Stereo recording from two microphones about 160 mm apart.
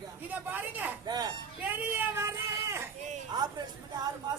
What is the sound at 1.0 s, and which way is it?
Speech, 25° right (ahead or behind).